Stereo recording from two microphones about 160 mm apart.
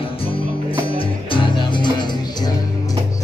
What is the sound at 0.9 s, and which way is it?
Music, 30° left (ahead or behind).